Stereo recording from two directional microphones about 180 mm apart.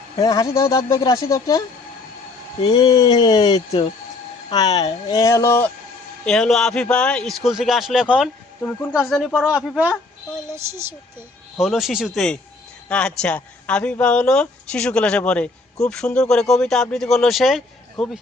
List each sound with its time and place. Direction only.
0.2 s speech: 20° left (ahead or behind); by 8.3 s 5° right (ahead or behind)
9.0 s speech: 10° left (ahead or behind)
9.3 s speech: 5° right (ahead or behind)
11.6 s speech: centre (ahead or behind)